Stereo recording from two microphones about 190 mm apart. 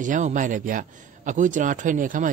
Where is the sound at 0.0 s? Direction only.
40° right (ahead or behind).